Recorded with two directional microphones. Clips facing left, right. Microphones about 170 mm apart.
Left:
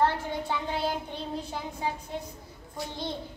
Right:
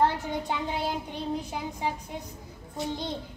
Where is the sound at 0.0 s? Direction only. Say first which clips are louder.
Right 1 dB; 15° right (ahead or behind).